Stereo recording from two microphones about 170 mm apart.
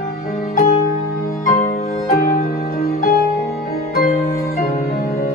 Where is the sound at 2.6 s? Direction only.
65° left (ahead or behind).